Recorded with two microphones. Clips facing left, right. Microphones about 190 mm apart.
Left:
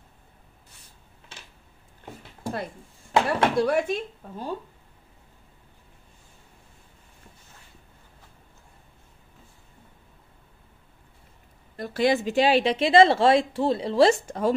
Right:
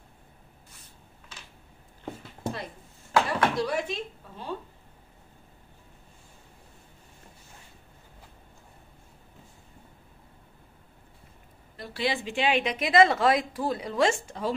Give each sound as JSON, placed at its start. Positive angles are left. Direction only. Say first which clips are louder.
{"t": 3.1, "sound": "a sound", "louder": "left 2 dB", "side_deg": 25}
{"t": 3.5, "sound": "speech", "louder": "left 6 dB", "side_deg": 50}
{"t": 11.7, "sound": "a woman's voice", "louder": "left 7 dB", "side_deg": 45}